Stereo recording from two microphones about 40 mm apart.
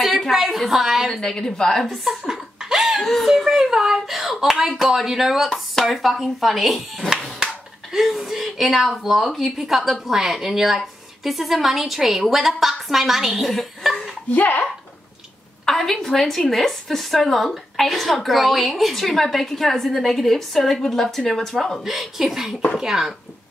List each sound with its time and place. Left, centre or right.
0.3 s a woman's voice: centre
1.2 s a woman's voice: centre
2.0 s laughter: centre
3.0 s a woman's voice: centre
3.4 s a woman's voice: centre
7.9 s a woman's voice: centre
14.3 s speech: left
15.6 s a woman's voice: centre
21.8 s a woman's voice: centre